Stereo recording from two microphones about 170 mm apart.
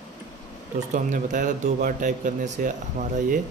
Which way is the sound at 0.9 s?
45° right (ahead or behind).